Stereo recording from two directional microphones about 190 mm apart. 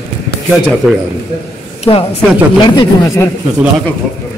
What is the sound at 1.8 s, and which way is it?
Speech, 30° left (ahead or behind).